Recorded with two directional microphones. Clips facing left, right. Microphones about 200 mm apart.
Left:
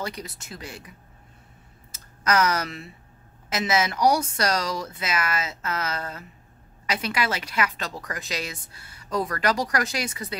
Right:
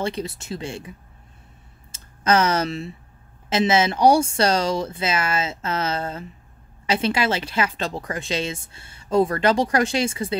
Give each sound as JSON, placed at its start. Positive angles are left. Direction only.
{"t": 0.0, "sound": "a woman's voice", "side_deg": -30}
{"t": 1.9, "sound": "a sound", "side_deg": -25}
{"t": 3.4, "sound": "a woman's voice", "side_deg": -25}